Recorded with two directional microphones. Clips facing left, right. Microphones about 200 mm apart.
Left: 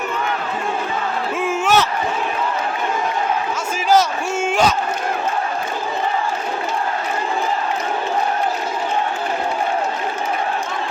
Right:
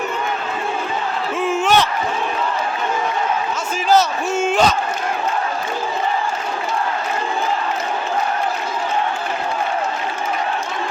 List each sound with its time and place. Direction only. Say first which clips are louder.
1.4 s crowd: right 1 dB; 10° left (ahead or behind)
3.8 s battle cry: even; 10° left (ahead or behind)